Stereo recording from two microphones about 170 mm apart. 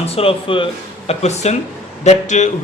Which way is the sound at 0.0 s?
35° left (ahead or behind).